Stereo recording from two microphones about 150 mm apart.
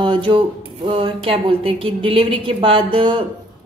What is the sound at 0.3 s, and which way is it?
A woman's voice, 35° right (ahead or behind).